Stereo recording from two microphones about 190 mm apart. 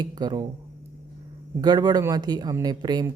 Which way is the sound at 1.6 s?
20° right (ahead or behind).